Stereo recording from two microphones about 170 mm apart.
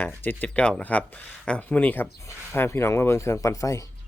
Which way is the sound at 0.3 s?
10° left (ahead or behind).